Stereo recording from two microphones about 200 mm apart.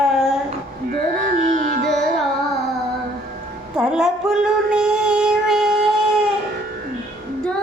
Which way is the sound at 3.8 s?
5° right (ahead or behind).